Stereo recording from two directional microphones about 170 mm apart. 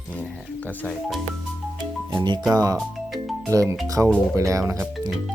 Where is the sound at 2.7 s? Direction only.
Centre (ahead or behind).